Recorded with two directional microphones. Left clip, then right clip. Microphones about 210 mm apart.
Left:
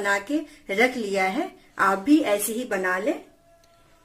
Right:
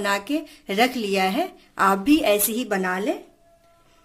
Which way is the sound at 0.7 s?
55° right (ahead or behind).